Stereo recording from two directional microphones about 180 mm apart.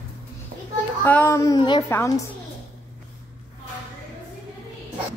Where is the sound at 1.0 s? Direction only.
10° left (ahead or behind).